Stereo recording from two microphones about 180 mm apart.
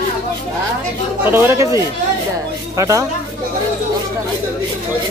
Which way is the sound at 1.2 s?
15° right (ahead or behind).